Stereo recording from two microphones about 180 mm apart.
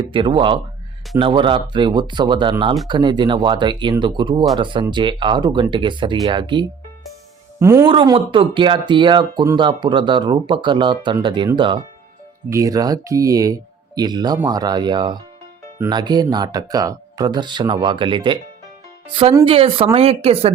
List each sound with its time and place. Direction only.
0.1 s speech: 30° right (ahead or behind)
7.6 s speech: 15° right (ahead or behind)
7.9 s speech: 30° right (ahead or behind)